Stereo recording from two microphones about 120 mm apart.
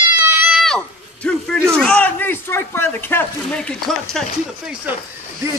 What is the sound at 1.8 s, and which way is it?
Speech, 10° left (ahead or behind).